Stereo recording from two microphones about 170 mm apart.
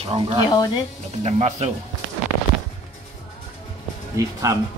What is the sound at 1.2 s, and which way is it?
Music, 40° right (ahead or behind).